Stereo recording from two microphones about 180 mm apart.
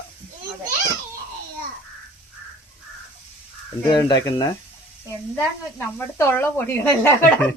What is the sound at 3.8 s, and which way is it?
Speech, 25° left (ahead or behind).